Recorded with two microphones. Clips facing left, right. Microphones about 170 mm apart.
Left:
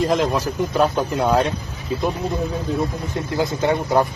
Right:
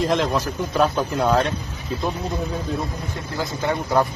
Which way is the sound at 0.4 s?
15° left (ahead or behind).